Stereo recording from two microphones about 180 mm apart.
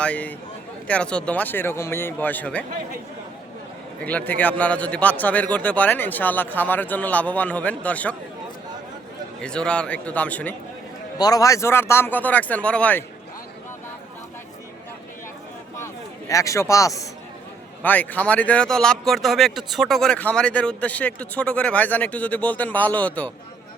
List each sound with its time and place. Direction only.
0.0 s speech: 10° left (ahead or behind)
4.0 s speech: 10° left (ahead or behind)
9.4 s speech: 5° left (ahead or behind)
11.2 s speech: 20° left (ahead or behind)
16.3 s speech: 15° left (ahead or behind)